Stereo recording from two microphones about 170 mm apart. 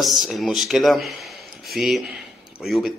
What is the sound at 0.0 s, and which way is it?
A man's voice, centre (ahead or behind).